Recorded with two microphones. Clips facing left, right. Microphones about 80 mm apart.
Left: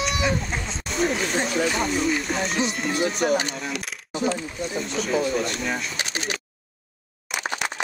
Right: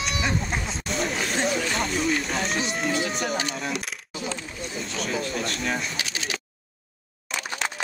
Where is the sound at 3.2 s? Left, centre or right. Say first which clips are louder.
Left 7 dB; left.